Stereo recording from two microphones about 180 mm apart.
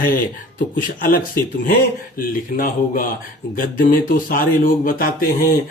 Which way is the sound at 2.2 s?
50° left (ahead or behind).